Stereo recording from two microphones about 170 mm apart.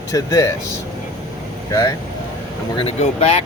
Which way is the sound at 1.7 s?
15° left (ahead or behind).